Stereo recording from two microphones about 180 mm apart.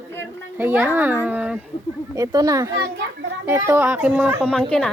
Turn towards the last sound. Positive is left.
turn(degrees=5)  # may be behind; listen again after turning